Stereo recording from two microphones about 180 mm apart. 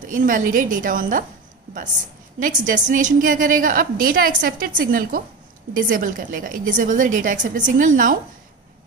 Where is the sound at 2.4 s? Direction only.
45° right (ahead or behind).